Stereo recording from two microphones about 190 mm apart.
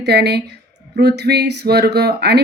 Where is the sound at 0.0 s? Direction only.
60° right (ahead or behind).